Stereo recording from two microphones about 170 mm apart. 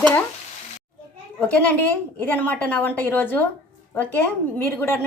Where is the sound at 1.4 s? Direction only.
10° left (ahead or behind).